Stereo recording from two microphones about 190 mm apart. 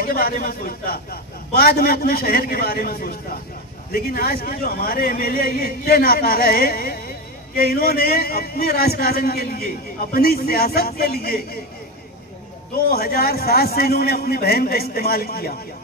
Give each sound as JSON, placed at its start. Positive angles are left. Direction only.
{"t": 0.0, "sound": "a man's voice", "side_deg": 50}
{"t": 12.9, "sound": "a man's voice", "side_deg": 55}